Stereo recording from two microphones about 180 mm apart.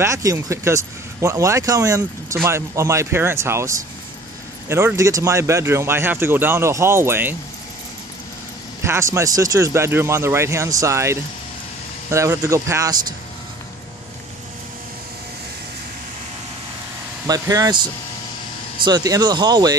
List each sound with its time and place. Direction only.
0.0 s speech: 20° right (ahead or behind)
8.8 s speech: 15° right (ahead or behind)
17.3 s speech: 20° right (ahead or behind)
18.9 s speech: 20° right (ahead or behind)